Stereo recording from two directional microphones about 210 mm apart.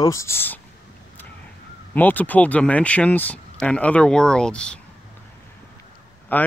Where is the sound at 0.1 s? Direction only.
15° left (ahead or behind).